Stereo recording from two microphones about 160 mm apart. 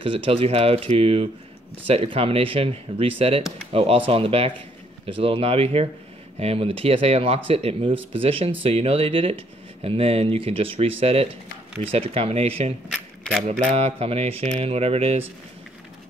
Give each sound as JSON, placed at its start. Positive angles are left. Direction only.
{"t": 0.0, "sound": "speech", "side_deg": -35}
{"t": 7.9, "sound": "speech", "side_deg": -10}
{"t": 8.2, "sound": "speech", "side_deg": -35}